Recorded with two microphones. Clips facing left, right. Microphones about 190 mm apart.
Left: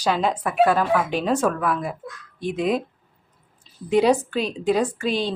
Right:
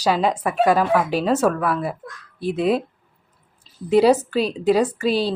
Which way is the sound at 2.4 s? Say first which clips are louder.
Right 3 dB; 35° right (ahead or behind).